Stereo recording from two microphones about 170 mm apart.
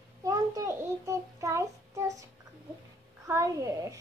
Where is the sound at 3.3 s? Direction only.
15° right (ahead or behind).